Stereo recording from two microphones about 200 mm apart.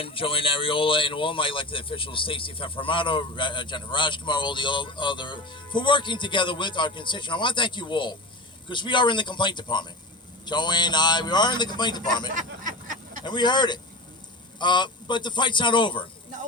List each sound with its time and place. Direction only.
0.0 s speech: 25° left (ahead or behind)
12.3 s speech: 40° right (ahead or behind)
13.2 s speech: 20° left (ahead or behind)